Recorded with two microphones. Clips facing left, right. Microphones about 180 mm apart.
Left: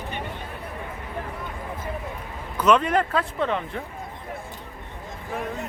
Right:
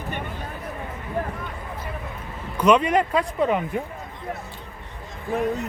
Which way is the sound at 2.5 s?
10° right (ahead or behind).